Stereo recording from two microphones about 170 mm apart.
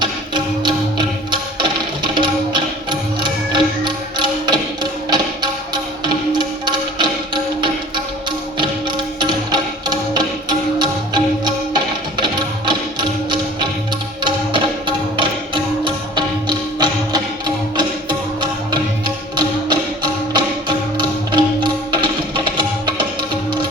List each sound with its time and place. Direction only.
0.0 s music: 25° right (ahead or behind)
9.1 s music: 25° right (ahead or behind)
10.8 s music: 25° right (ahead or behind)